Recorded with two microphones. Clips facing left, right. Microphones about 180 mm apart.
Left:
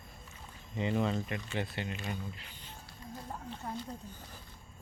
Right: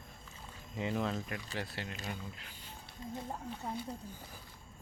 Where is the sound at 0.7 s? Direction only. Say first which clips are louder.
Left 3 dB; centre (ahead or behind).